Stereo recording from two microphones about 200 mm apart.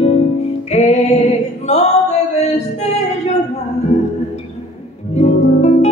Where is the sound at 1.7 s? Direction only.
35° left (ahead or behind).